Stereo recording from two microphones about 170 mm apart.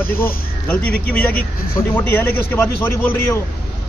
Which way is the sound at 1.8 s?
10° left (ahead or behind).